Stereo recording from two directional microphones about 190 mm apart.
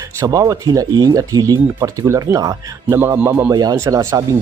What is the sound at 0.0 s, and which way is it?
Speech, 15° right (ahead or behind).